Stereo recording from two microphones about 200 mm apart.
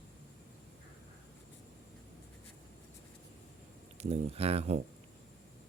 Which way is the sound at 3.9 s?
30° right (ahead or behind).